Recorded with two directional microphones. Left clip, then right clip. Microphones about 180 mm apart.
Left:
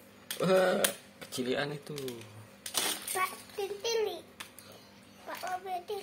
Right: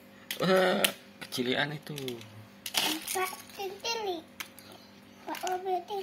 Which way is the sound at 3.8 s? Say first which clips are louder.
Left 2 dB; 20° left (ahead or behind).